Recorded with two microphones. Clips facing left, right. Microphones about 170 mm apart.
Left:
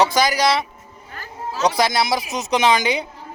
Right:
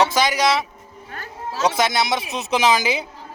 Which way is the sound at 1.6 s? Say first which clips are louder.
Left 1 dB; 35° left (ahead or behind).